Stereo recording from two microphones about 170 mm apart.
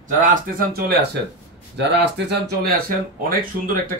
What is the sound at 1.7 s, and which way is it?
Speech, 85° right.